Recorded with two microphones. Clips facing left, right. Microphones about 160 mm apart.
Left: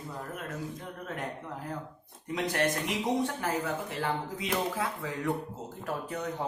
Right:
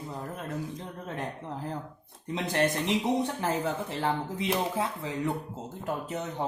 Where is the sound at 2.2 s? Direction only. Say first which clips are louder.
Right 2 dB; 25° right (ahead or behind).